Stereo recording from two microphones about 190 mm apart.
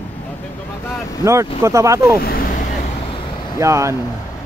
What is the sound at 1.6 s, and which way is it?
Speech, 15° right (ahead or behind).